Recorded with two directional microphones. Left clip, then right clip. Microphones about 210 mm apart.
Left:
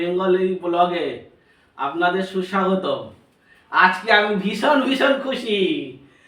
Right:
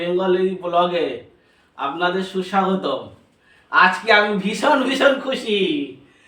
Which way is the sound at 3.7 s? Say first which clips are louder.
Right 1 dB; 15° right (ahead or behind).